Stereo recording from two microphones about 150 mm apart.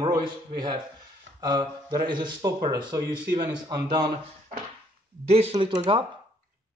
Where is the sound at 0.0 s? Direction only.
30° right (ahead or behind).